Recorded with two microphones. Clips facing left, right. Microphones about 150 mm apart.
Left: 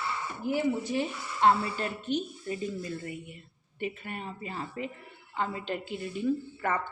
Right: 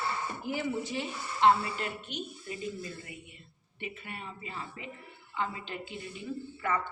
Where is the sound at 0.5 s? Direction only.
45° left (ahead or behind).